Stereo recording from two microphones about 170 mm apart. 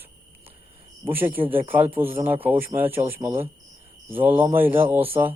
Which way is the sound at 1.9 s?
10° right (ahead or behind).